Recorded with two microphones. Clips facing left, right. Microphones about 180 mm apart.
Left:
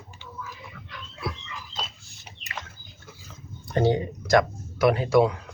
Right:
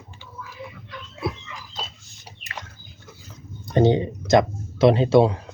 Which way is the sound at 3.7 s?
20° right (ahead or behind).